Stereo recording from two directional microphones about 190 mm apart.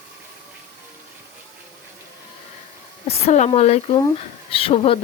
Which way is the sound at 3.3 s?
35° left (ahead or behind).